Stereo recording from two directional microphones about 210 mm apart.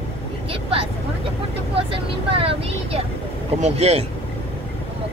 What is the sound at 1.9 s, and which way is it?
Speech, 25° right (ahead or behind).